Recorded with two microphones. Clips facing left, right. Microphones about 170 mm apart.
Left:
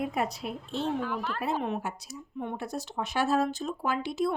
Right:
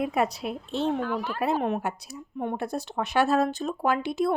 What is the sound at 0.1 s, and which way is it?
Speech, 80° right.